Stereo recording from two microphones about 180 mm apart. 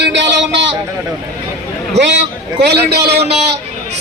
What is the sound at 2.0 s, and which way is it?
A man's voice, 75° right (ahead or behind).